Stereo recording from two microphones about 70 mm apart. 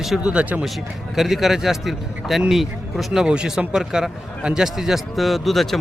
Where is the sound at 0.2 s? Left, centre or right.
Centre.